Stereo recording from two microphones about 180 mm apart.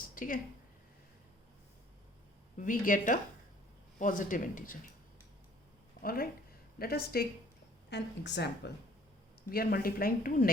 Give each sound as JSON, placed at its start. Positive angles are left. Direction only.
{"t": 0.1, "sound": "a sound", "side_deg": 50}
{"t": 2.6, "sound": "speech", "side_deg": 50}
{"t": 6.0, "sound": "a woman's voice", "side_deg": 55}
{"t": 7.9, "sound": "a woman's voice", "side_deg": 75}
{"t": 9.5, "sound": "a woman's voice", "side_deg": 55}